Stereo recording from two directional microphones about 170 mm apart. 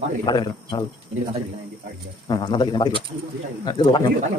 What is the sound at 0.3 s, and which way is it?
Speech, 25° left (ahead or behind).